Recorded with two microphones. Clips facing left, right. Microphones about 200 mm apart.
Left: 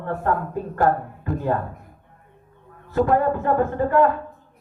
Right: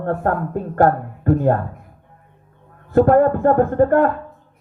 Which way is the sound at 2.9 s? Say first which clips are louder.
Right 6 dB; 55° right (ahead or behind).